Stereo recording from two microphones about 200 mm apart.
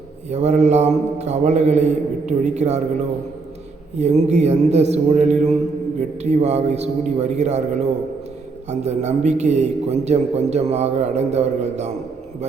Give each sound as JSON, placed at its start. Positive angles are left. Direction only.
{"t": 0.3, "sound": "a man's voice", "side_deg": -35}
{"t": 3.9, "sound": "a man's voice", "side_deg": -35}
{"t": 8.7, "sound": "a man's voice", "side_deg": -35}